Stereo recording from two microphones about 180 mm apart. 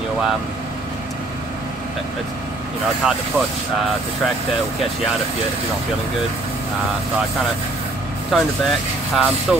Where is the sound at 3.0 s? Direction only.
5° right (ahead or behind).